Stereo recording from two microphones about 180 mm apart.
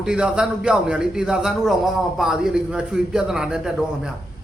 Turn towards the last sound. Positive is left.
turn(degrees=-5)  # may be behind; listen again after turning